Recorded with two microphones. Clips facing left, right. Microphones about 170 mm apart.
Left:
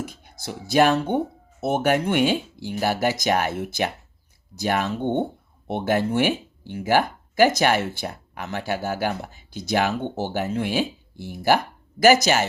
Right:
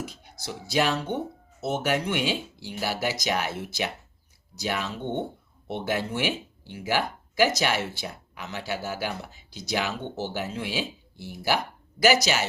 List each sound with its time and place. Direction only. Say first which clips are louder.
0.0 s speech: left 3 dB; 55° left (ahead or behind)